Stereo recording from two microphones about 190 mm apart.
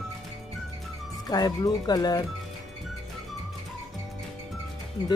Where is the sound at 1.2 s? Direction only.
20° left (ahead or behind).